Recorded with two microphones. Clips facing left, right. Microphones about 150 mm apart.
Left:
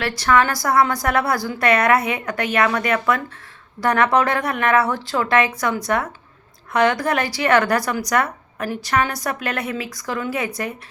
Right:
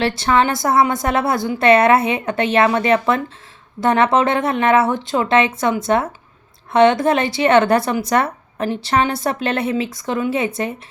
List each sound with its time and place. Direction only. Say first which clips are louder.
0.0 s speech: right 2 dB; 25° right (ahead or behind)